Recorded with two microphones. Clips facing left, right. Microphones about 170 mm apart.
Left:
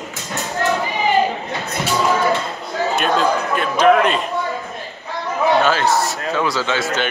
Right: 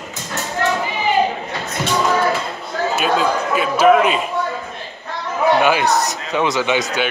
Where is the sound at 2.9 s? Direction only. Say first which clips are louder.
Even; 5° right (ahead or behind).